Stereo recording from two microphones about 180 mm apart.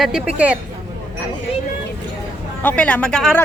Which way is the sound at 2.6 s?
5° left (ahead or behind).